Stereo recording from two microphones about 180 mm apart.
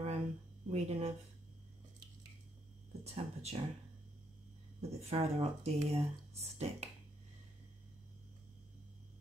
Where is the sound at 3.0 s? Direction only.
35° right (ahead or behind).